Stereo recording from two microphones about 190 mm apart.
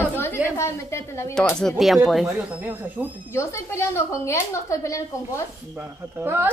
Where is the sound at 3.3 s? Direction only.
15° left (ahead or behind).